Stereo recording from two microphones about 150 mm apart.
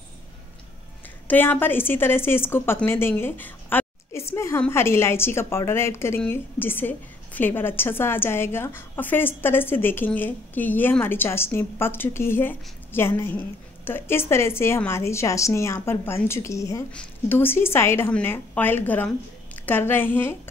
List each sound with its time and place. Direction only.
1.2 s a woman's voice: 10° left (ahead or behind)